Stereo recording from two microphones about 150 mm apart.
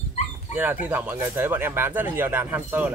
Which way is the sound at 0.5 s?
10° right (ahead or behind).